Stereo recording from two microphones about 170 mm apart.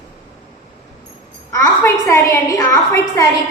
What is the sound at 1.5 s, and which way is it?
A woman's voice, 20° left (ahead or behind).